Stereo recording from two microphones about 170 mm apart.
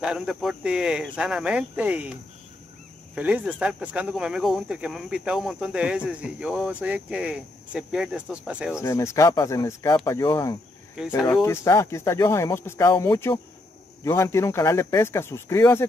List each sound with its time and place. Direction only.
0.0 s speech: 5° right (ahead or behind)
3.2 s speech: 10° right (ahead or behind)
8.8 s speech: 15° left (ahead or behind)
11.1 s speech: centre (ahead or behind)
11.4 s speech: 15° left (ahead or behind)